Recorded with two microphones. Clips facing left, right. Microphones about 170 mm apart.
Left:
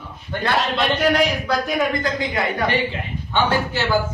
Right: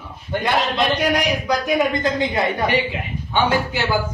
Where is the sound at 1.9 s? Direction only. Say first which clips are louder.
Right 2 dB; 25° right (ahead or behind).